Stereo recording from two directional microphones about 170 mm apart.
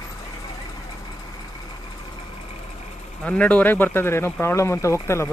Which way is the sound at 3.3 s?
10° left (ahead or behind).